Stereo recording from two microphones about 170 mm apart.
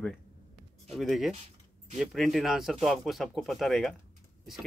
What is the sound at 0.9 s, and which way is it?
Speech, centre (ahead or behind).